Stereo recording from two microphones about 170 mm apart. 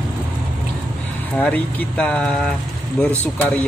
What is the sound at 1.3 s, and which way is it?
Speech, 5° left (ahead or behind).